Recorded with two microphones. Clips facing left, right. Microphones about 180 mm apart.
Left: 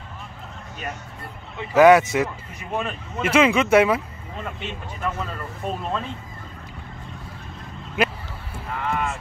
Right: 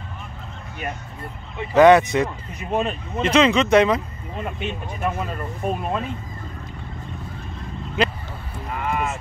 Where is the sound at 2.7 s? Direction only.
20° right (ahead or behind).